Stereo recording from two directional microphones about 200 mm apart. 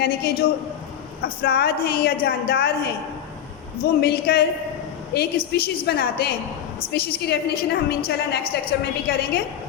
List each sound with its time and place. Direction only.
0.0 s a woman's voice: 50° left (ahead or behind)